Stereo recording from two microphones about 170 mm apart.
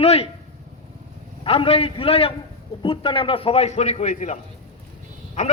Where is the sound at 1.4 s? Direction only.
35° left (ahead or behind).